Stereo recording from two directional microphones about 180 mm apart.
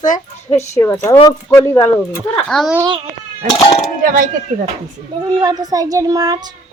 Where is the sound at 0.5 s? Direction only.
15° left (ahead or behind).